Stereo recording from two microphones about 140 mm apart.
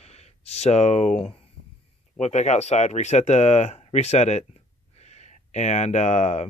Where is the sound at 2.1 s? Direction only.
55° left (ahead or behind).